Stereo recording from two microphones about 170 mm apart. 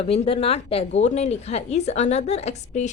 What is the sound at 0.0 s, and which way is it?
Speech, 35° left (ahead or behind).